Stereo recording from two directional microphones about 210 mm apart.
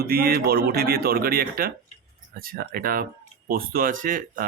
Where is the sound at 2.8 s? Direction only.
45° right (ahead or behind).